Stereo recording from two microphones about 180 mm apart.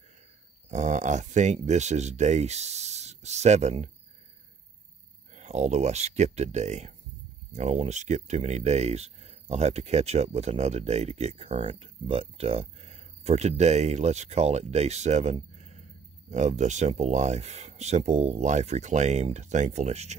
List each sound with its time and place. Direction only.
0.7 s speech: 40° right (ahead or behind)
5.3 s speech: 40° right (ahead or behind)
15.5 s a sound: 40° right (ahead or behind)
16.3 s speech: 40° right (ahead or behind)